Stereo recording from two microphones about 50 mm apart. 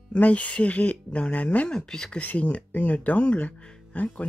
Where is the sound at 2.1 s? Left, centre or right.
Left.